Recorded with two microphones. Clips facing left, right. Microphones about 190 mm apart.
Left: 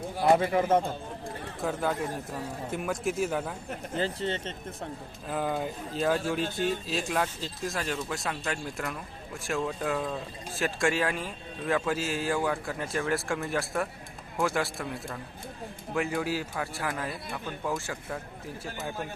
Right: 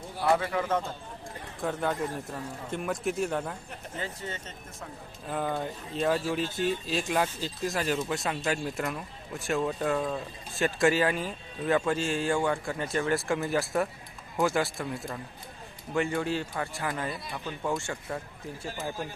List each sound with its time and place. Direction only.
0.2 s a man's voice: 20° left (ahead or behind)
1.6 s speech: centre (ahead or behind)
3.9 s speech: 30° left (ahead or behind)
5.3 s speech: 5° left (ahead or behind)